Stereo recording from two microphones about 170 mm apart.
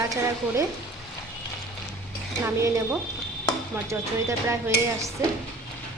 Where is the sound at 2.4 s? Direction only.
15° right (ahead or behind).